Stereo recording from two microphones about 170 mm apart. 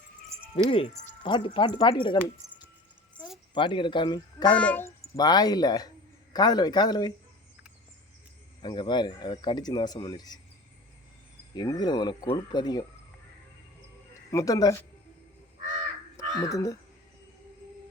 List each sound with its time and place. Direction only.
0.6 s speech: 35° left (ahead or behind)
3.5 s speech: 25° left (ahead or behind)
4.5 s a child's voice: 10° left (ahead or behind)
5.1 s speech: 25° left (ahead or behind)
8.6 s speech: 25° left (ahead or behind)
11.5 s speech: 25° left (ahead or behind)
14.1 s speech: 20° left (ahead or behind)
16.4 s speech: 20° left (ahead or behind)